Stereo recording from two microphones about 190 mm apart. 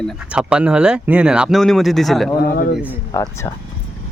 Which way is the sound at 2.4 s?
55° left (ahead or behind).